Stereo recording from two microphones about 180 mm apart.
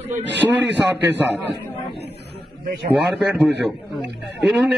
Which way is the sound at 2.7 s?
65° right (ahead or behind).